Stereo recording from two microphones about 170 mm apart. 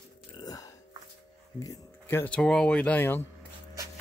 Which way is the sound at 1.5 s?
20° left (ahead or behind).